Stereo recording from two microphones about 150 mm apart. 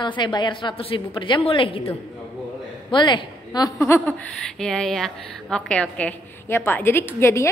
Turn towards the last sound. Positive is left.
turn(degrees=15)  # may be behind; listen again after turning